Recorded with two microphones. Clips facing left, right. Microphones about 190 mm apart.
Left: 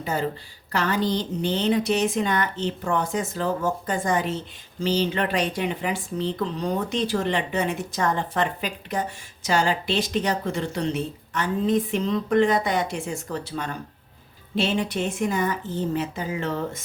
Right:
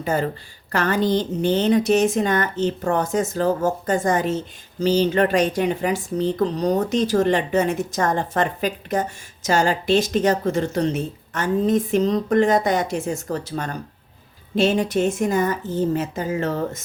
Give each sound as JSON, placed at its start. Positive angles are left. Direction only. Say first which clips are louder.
{"t": 0.0, "sound": "a woman's voice", "louder": "right 4 dB", "side_deg": -50}